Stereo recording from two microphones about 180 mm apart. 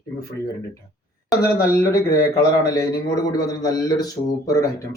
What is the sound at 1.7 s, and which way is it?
A man's voice, 15° left (ahead or behind).